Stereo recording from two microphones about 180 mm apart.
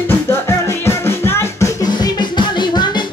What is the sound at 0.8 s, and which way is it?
Music, 15° left (ahead or behind).